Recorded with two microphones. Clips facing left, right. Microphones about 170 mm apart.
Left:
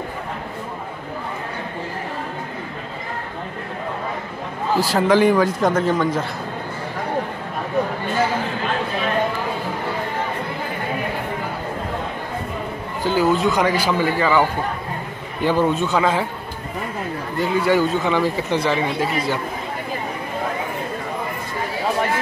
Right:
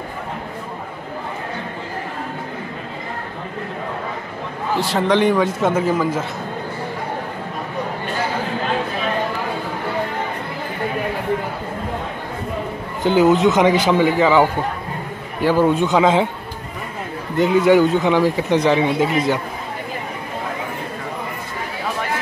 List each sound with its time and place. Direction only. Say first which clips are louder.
4.7 s a man's voice: left 1 dB; centre (ahead or behind)
13.0 s a man's voice: right 4 dB; 20° right (ahead or behind)
17.4 s speech: right 5 dB; 15° right (ahead or behind)